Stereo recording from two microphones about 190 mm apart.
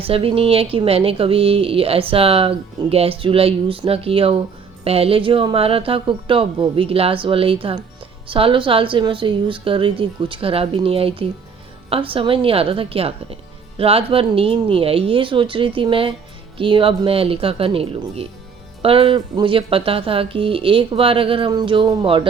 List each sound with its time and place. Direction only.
0.0 s speech: 30° right (ahead or behind)